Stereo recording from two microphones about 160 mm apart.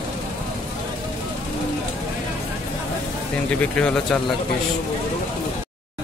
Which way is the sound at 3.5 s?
5° left (ahead or behind).